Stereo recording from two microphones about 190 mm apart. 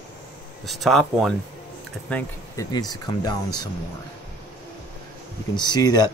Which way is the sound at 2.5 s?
20° left (ahead or behind).